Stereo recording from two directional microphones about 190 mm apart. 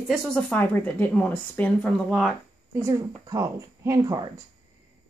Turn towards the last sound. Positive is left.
turn(degrees=-20)  # may be behind; listen again after turning